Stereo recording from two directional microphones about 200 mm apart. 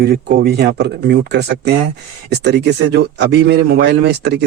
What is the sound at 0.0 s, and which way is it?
Speech, 50° right (ahead or behind).